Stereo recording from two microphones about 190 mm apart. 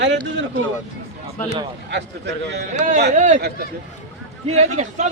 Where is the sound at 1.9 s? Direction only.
65° right (ahead or behind).